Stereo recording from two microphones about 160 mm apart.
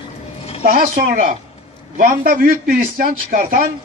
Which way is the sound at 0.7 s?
60° right (ahead or behind).